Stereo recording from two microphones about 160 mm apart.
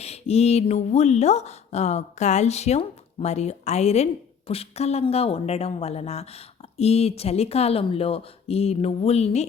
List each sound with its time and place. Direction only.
0.0 s speech: 40° left (ahead or behind)